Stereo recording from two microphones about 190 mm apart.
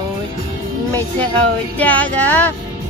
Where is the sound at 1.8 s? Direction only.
10° left (ahead or behind).